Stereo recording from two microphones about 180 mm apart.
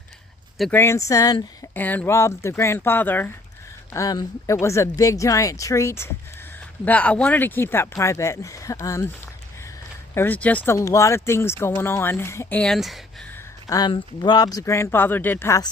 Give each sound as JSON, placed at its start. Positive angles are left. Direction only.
{"t": 0.7, "sound": "speech", "side_deg": 15}
{"t": 10.2, "sound": "speech", "side_deg": 10}
{"t": 13.3, "sound": "speech", "side_deg": 20}